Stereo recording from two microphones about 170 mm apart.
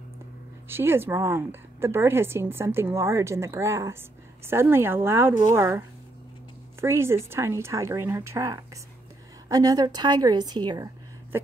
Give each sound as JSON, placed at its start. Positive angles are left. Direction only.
{"t": 0.7, "sound": "a woman's voice", "side_deg": -15}